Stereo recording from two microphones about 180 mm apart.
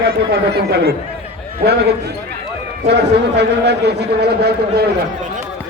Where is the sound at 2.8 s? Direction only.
70° right (ahead or behind).